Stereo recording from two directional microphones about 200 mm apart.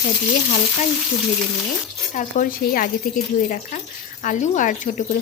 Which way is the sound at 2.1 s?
45° left (ahead or behind).